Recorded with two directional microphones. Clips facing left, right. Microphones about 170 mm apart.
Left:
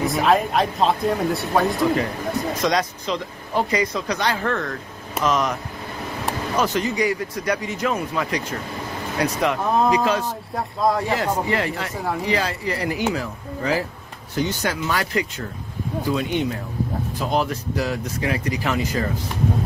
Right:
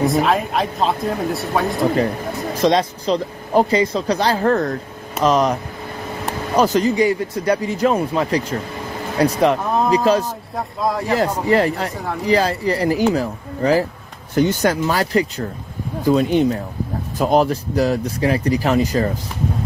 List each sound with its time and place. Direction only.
0.0 s speech: centre (ahead or behind)
2.5 s speech: 30° right (ahead or behind)
10.5 s speech: centre (ahead or behind)
11.1 s speech: 40° right (ahead or behind)
14.3 s speech: 50° right (ahead or behind)